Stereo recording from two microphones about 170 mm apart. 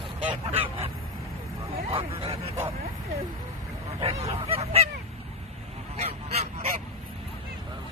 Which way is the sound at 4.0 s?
40° right (ahead or behind).